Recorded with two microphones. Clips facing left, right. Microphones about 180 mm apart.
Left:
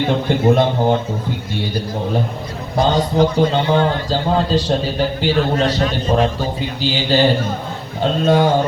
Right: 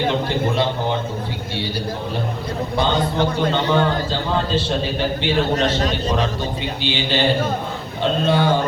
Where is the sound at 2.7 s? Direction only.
40° left (ahead or behind).